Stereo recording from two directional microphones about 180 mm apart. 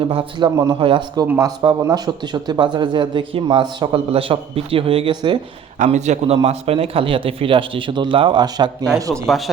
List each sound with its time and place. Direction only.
0.1 s a man's voice: 30° right (ahead or behind)
5.8 s a man's voice: 40° right (ahead or behind); by 9.2 s 20° right (ahead or behind)
9.2 s speech: centre (ahead or behind)